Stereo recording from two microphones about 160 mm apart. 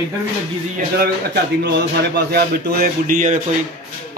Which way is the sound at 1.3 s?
90° right.